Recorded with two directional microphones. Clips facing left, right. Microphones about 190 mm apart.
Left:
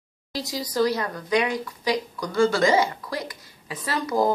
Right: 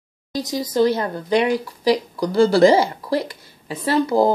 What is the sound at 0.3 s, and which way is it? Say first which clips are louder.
A woman's voice: right 6 dB; 20° right (ahead or behind).